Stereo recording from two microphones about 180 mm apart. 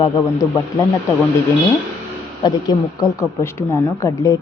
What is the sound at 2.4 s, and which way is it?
Speech, 25° left (ahead or behind).